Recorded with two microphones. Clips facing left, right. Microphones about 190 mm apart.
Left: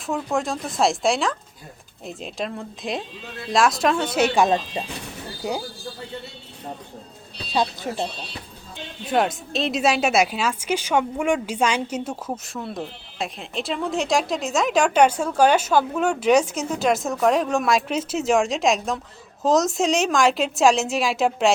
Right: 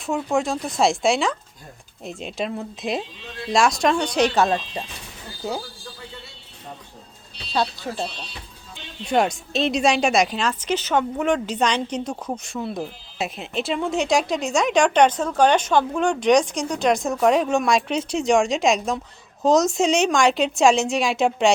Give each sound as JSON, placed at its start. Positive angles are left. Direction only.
{"t": 0.0, "sound": "a woman's voice", "side_deg": 0}
{"t": 4.4, "sound": "speech", "side_deg": 20}
{"t": 7.5, "sound": "speech", "side_deg": 15}
{"t": 9.0, "sound": "a woman's voice", "side_deg": 0}